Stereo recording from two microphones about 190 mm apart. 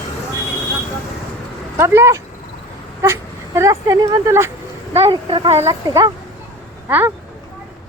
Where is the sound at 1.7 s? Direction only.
15° right (ahead or behind).